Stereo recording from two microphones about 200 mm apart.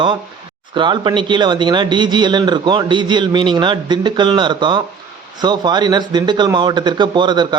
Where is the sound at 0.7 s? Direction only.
25° right (ahead or behind).